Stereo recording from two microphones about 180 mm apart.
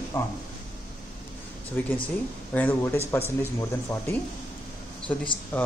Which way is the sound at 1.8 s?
10° left (ahead or behind).